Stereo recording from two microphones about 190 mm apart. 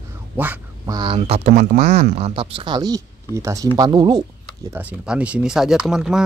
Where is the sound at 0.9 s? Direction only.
25° right (ahead or behind).